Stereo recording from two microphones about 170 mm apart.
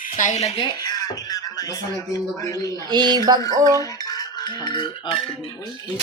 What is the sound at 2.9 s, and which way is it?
Speech, 25° right (ahead or behind).